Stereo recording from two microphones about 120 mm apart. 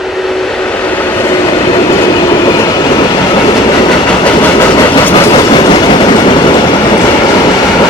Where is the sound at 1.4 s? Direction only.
45° left (ahead or behind).